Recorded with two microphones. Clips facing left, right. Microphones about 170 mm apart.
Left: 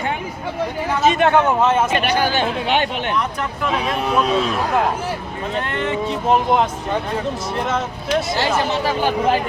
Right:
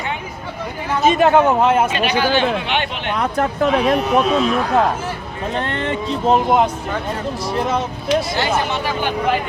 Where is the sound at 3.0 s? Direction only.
55° right (ahead or behind).